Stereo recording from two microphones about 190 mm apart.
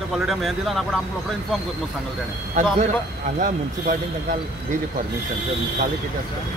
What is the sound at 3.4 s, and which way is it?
Speech, 45° right (ahead or behind).